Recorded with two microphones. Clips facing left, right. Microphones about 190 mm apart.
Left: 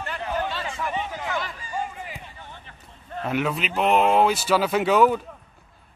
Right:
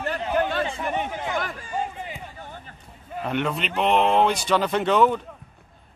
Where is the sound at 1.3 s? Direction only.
50° right (ahead or behind).